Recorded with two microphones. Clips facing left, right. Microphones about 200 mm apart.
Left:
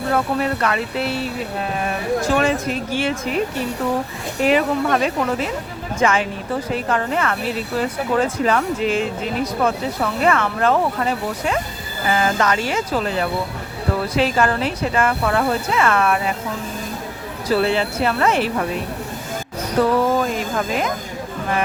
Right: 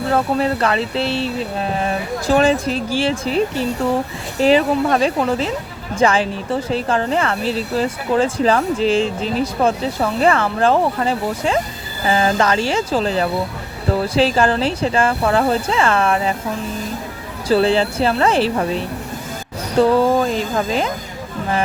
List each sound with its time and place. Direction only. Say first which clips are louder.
0.1 s speech: right 2 dB; 30° right (ahead or behind)
17.5 s speech: right 4 dB; 30° right (ahead or behind)